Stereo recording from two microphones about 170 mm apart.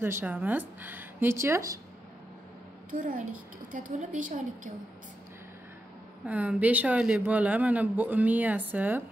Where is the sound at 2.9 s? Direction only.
50° right (ahead or behind).